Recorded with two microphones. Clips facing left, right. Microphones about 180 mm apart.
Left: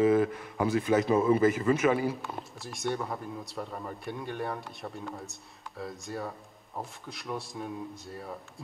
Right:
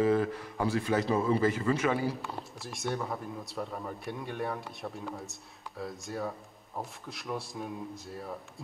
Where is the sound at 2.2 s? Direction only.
Centre (ahead or behind).